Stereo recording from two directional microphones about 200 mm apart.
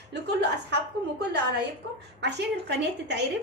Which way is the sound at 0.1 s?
60° right (ahead or behind).